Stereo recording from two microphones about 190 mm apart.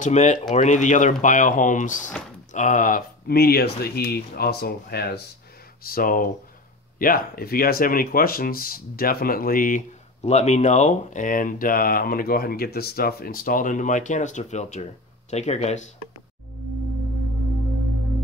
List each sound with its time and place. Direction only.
0.0 s speech: 40° left (ahead or behind)